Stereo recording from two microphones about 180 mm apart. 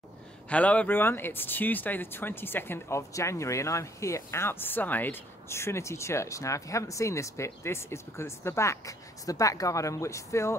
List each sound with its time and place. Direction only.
0.5 s speech: 10° left (ahead or behind)